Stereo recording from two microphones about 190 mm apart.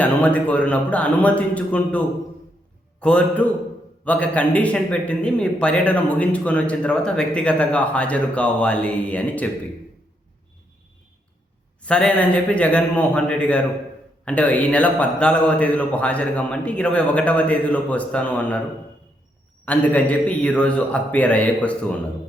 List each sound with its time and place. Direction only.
0.0 s speech: 5° left (ahead or behind)
11.8 s speech: 5° left (ahead or behind)
19.6 s speech: 10° left (ahead or behind)